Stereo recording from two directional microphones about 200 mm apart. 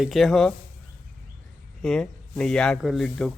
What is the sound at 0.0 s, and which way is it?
Speech, centre (ahead or behind).